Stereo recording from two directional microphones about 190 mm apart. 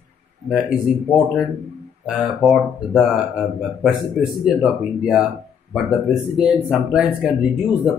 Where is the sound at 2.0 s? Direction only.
Centre (ahead or behind).